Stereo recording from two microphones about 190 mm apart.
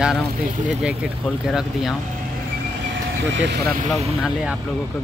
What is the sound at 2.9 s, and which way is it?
Vehicle, 75° right (ahead or behind).